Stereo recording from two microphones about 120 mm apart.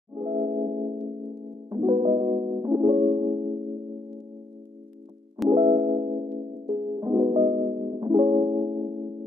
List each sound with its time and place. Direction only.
0.1 s singing bowl: 45° right (ahead or behind)
1.7 s music: 40° right (ahead or behind)
5.5 s music: 50° right (ahead or behind)